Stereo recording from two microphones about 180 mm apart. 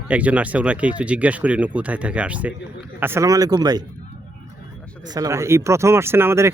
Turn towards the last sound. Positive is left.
turn(degrees=-15)  # may be behind; listen again after turning